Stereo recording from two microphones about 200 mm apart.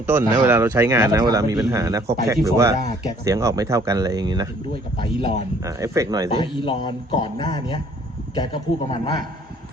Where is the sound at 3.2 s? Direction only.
15° right (ahead or behind).